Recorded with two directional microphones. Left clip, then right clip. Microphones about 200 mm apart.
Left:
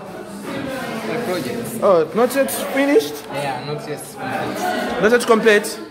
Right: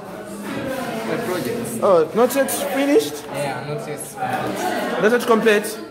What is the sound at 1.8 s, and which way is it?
A woman's voice, 5° left (ahead or behind).